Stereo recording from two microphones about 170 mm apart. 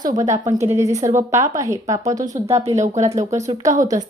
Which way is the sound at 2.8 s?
45° right (ahead or behind).